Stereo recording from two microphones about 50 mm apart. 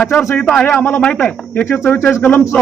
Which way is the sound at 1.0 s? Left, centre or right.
Centre.